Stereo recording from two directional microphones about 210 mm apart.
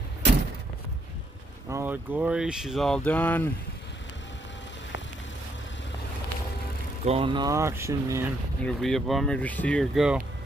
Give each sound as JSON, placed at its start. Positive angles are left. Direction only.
{"t": 1.7, "sound": "speech", "side_deg": -10}
{"t": 7.1, "sound": "speech", "side_deg": -25}
{"t": 8.6, "sound": "speech", "side_deg": 0}